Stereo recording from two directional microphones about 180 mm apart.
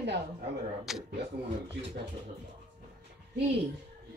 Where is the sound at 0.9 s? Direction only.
Centre (ahead or behind).